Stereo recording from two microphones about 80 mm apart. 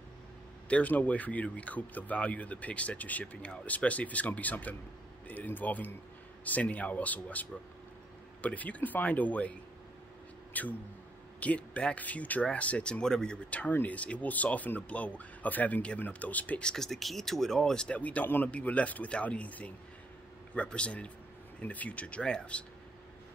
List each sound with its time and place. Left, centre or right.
0.7 s speech: centre